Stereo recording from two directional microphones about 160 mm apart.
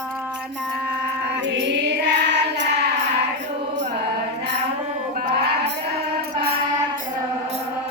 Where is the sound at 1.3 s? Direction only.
90° right.